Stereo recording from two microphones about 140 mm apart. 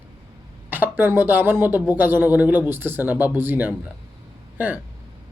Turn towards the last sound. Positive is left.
turn(degrees=-10)  # may be behind; listen again after turning